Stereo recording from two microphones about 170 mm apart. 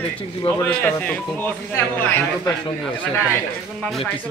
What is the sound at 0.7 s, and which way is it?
Speech, 10° left (ahead or behind).